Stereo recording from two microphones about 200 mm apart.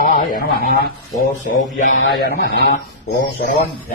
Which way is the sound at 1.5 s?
40° left (ahead or behind).